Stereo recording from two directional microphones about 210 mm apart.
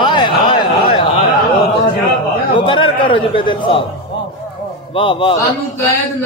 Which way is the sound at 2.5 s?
25° left (ahead or behind).